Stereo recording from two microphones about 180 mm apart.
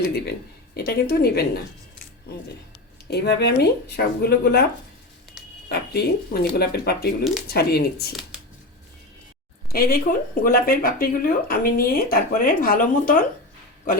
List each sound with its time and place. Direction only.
0.3 s speech: 60° left (ahead or behind)
3.1 s speech: 65° left (ahead or behind)
5.6 s speech: 60° left (ahead or behind)
9.7 s speech: 55° left (ahead or behind)